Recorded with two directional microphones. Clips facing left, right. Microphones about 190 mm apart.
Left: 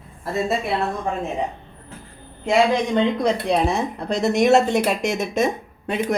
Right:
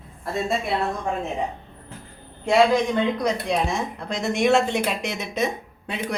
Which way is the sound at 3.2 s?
35° left (ahead or behind).